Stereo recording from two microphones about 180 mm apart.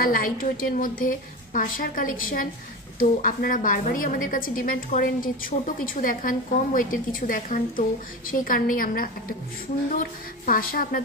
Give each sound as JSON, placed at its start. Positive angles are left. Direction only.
{"t": 0.0, "sound": "a woman's voice", "side_deg": 55}